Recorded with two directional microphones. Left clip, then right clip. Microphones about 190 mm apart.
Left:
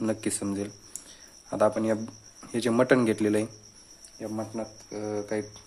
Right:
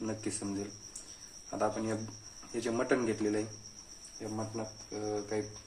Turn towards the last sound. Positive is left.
turn(degrees=60)  # may be behind; listen again after turning